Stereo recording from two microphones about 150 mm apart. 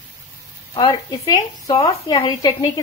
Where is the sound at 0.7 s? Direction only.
35° left (ahead or behind).